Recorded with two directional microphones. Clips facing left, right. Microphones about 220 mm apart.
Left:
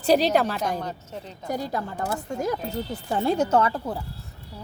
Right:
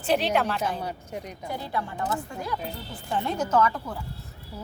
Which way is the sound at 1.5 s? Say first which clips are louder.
Left 5 dB; 40° left (ahead or behind).